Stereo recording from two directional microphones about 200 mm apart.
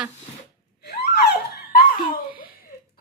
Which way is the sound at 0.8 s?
55° left (ahead or behind).